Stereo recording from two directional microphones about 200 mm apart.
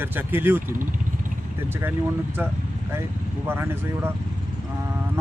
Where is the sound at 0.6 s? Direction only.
40° right (ahead or behind).